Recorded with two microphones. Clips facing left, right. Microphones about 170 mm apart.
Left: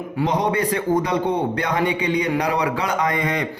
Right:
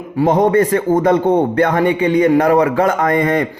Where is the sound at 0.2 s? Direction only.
50° right (ahead or behind).